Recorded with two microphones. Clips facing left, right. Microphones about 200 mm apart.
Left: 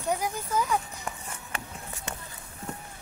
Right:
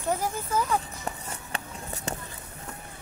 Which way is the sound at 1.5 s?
40° right (ahead or behind).